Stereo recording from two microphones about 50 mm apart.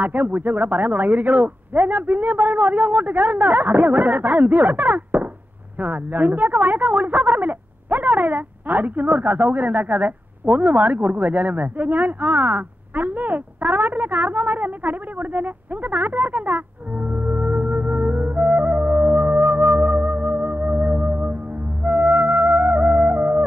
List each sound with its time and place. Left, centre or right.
0.0 s a woman's voice: right
21.8 s music: right